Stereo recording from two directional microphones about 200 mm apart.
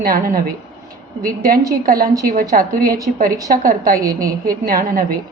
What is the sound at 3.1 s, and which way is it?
A woman's voice, 45° right (ahead or behind).